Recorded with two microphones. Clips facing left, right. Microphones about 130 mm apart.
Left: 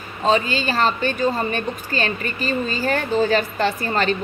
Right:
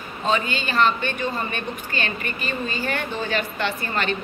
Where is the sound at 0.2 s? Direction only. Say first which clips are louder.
Left 5 dB; 35° left (ahead or behind).